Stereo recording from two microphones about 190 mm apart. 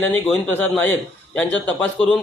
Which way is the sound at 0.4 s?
10° left (ahead or behind).